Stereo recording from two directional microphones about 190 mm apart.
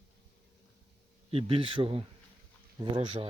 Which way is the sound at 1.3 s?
30° right (ahead or behind).